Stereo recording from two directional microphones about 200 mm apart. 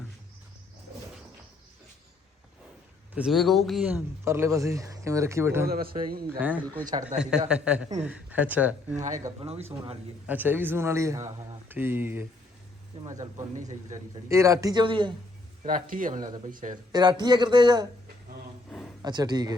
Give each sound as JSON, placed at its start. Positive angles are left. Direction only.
{"t": 3.2, "sound": "speech", "side_deg": 0}
{"t": 5.6, "sound": "speech", "side_deg": -50}
{"t": 7.2, "sound": "a man's voice", "side_deg": -5}
{"t": 9.0, "sound": "speech", "side_deg": -35}
{"t": 10.2, "sound": "speech", "side_deg": -10}
{"t": 15.6, "sound": "speech", "side_deg": -40}
{"t": 16.9, "sound": "speech", "side_deg": -20}
{"t": 19.0, "sound": "speech", "side_deg": -20}